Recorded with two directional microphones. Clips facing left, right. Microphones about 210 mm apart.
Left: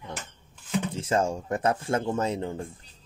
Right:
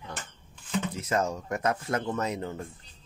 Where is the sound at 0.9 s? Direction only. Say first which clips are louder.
Left 4 dB; 30° left (ahead or behind).